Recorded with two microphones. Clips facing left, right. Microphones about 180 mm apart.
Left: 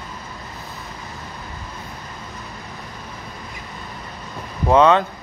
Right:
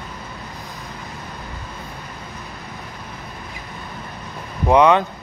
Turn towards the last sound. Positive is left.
turn(degrees=-15)  # may be behind; listen again after turning